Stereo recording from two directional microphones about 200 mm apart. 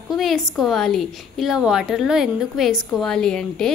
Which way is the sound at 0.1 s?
Centre (ahead or behind).